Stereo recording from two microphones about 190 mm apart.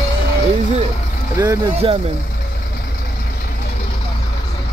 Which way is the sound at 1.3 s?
15° right (ahead or behind).